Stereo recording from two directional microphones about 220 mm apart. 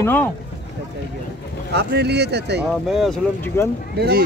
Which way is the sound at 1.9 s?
50° right (ahead or behind).